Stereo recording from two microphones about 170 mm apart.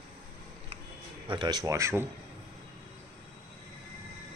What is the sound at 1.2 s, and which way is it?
Speech, 25° right (ahead or behind).